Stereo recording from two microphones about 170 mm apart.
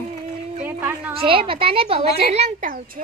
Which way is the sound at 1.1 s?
30° right (ahead or behind).